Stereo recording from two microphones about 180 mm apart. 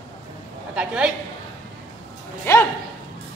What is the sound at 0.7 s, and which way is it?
Speech, 5° right (ahead or behind).